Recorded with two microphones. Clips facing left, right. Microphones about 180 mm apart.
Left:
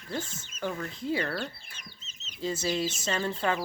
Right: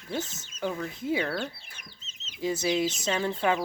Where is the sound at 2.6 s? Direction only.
15° right (ahead or behind).